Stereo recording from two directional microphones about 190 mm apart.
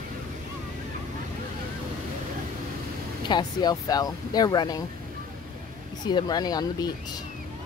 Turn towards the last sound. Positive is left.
turn(degrees=20)  # may be behind; listen again after turning